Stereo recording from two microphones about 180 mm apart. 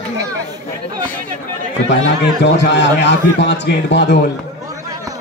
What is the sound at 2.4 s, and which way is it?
A man's voice, 75° left (ahead or behind).